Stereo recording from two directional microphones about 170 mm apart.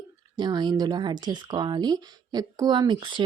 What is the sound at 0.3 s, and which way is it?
Speech, 25° right (ahead or behind).